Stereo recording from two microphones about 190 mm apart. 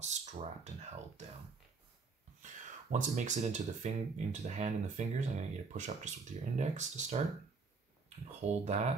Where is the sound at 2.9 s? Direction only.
40° right (ahead or behind).